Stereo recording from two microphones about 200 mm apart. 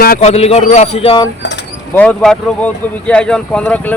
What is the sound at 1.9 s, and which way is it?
Speech, 5° left (ahead or behind).